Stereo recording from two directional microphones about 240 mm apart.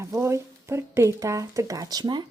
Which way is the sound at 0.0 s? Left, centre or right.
Centre.